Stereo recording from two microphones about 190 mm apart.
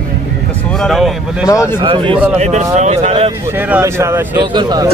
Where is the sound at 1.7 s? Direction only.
25° right (ahead or behind).